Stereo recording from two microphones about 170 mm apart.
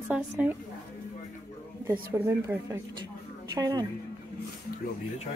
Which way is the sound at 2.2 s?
15° right (ahead or behind).